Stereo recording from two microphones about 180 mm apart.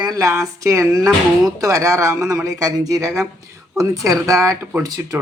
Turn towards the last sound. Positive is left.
turn(degrees=-20)  # may be behind; listen again after turning